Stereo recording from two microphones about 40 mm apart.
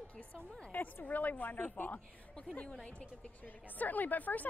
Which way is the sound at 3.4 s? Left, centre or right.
Left.